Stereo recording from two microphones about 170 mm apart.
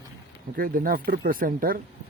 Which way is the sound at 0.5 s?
60° right (ahead or behind).